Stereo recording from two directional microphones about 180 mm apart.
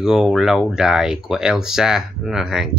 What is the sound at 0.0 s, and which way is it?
Speech, 5° right (ahead or behind).